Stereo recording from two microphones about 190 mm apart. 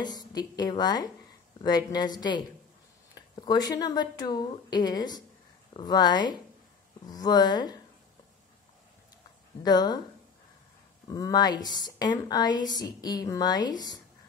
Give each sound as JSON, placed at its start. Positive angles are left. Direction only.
{"t": 0.0, "sound": "a woman's voice", "side_deg": 20}
{"t": 9.6, "sound": "a woman's voice", "side_deg": 20}
{"t": 11.1, "sound": "a woman's voice", "side_deg": 20}